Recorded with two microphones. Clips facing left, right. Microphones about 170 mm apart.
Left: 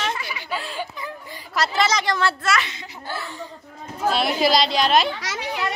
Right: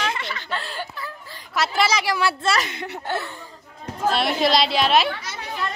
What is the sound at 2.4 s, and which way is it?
Speech, 30° right (ahead or behind).